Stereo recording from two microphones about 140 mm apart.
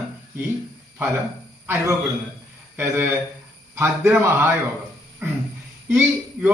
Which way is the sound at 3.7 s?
15° right (ahead or behind).